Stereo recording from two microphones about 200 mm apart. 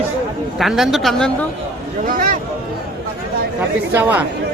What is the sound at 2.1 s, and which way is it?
Speech, 45° right (ahead or behind).